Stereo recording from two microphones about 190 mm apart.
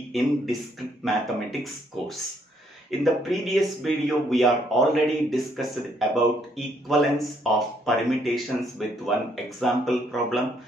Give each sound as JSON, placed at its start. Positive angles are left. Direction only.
{"t": 0.1, "sound": "speech", "side_deg": 0}